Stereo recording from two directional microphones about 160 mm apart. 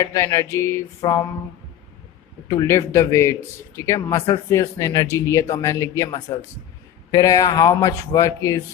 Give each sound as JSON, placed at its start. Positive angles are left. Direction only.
{"t": 0.0, "sound": "speech", "side_deg": 20}
{"t": 0.5, "sound": "a sound", "side_deg": 20}
{"t": 2.5, "sound": "speech", "side_deg": 20}